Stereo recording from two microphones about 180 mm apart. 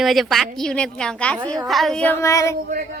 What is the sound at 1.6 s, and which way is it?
Child singing, centre (ahead or behind).